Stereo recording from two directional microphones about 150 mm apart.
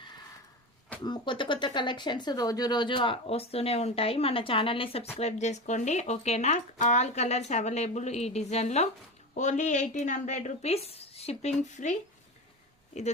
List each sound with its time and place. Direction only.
1.0 s speech: 30° left (ahead or behind)
5.2 s speech: 50° left (ahead or behind)
12.9 s speech: 50° left (ahead or behind)